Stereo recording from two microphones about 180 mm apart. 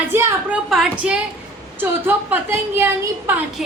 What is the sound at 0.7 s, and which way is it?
A woman's voice, 5° right (ahead or behind).